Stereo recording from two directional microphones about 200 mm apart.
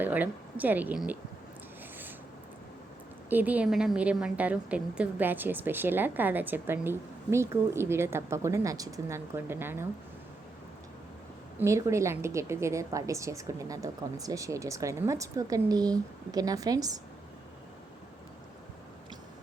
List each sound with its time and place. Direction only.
0.0 s speech: 10° right (ahead or behind)
3.2 s a woman's voice: 10° right (ahead or behind)
11.6 s a woman's voice: 15° right (ahead or behind)